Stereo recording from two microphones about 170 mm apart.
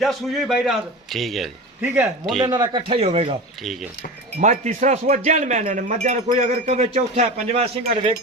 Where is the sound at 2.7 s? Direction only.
30° right (ahead or behind).